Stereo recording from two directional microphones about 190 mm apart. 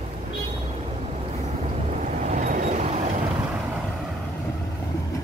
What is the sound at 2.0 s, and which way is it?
Vehicle, 40° right (ahead or behind).